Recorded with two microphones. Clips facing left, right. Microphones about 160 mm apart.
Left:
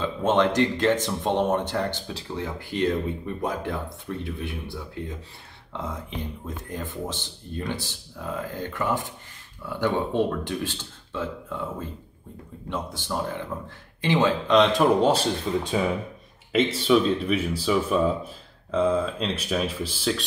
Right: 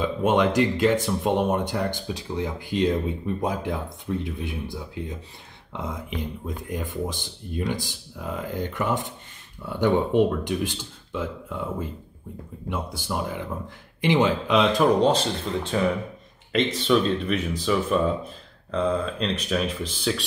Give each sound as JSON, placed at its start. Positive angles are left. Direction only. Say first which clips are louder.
{"t": 0.0, "sound": "speech", "louder": "right 1 dB", "side_deg": -15}
{"t": 12.6, "sound": "speech", "louder": "right 1 dB", "side_deg": -10}
{"t": 14.6, "sound": "speech", "louder": "right 1 dB", "side_deg": 0}